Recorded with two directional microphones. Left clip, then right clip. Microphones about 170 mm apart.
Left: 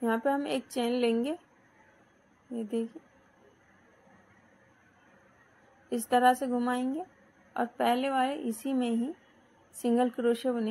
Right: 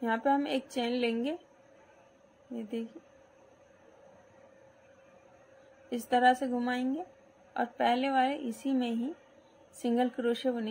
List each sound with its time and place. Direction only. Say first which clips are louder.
0.0 s a woman's voice: even; 15° left (ahead or behind)
5.9 s a woman's voice: left 1 dB; 15° left (ahead or behind)